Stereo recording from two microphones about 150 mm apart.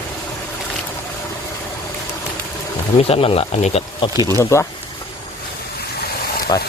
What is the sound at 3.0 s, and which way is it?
Speech, 40° left (ahead or behind).